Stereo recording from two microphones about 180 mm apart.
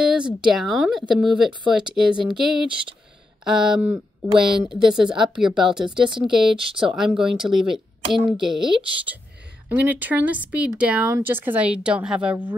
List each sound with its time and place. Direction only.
0.0 s speech: 5° right (ahead or behind)
4.3 s speech: 25° right (ahead or behind)
4.6 s speech: 5° right (ahead or behind)
6.0 s speech: 25° right (ahead or behind)
7.2 s speech: 5° right (ahead or behind)
9.7 s speech: 10° right (ahead or behind)